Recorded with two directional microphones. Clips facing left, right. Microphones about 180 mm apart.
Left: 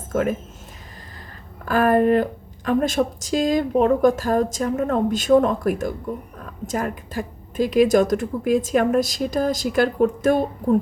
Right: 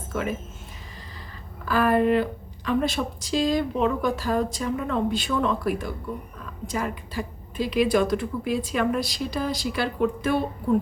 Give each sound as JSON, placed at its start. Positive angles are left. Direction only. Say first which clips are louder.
{"t": 0.1, "sound": "speech", "louder": "left 7 dB", "side_deg": 45}
{"t": 1.6, "sound": "speech", "louder": "left 4 dB", "side_deg": 50}